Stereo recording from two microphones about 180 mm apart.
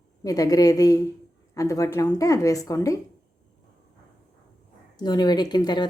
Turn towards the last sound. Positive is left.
turn(degrees=25)  # may be behind; listen again after turning